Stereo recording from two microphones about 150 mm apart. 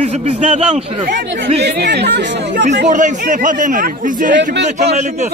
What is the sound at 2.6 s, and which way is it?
Speech, 55° right (ahead or behind).